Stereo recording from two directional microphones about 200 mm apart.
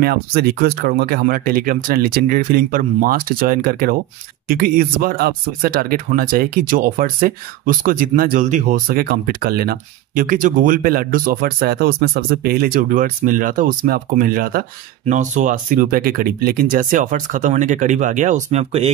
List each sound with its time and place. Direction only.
0.0 s speech: 50° right (ahead or behind); by 18.9 s 30° right (ahead or behind)